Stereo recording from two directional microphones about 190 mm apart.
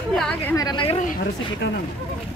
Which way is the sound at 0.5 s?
25° left (ahead or behind).